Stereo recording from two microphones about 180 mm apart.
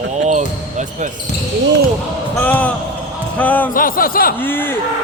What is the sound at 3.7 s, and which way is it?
Speech, 50° left (ahead or behind).